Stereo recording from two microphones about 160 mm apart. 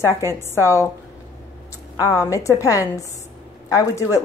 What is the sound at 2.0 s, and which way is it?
A woman's voice, 20° left (ahead or behind).